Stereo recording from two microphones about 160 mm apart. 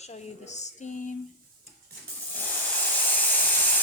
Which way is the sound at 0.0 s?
45° left (ahead or behind).